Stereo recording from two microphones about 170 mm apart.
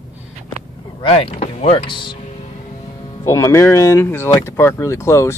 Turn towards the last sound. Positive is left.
turn(degrees=15)  # may be behind; listen again after turning